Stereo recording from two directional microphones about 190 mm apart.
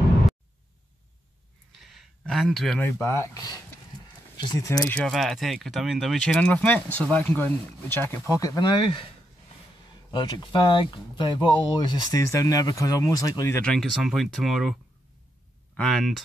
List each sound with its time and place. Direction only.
1.7 s speech: centre (ahead or behind); by 9.1 s 25° left (ahead or behind)
10.1 s speech: 25° left (ahead or behind)
13.6 s speech: 5° left (ahead or behind)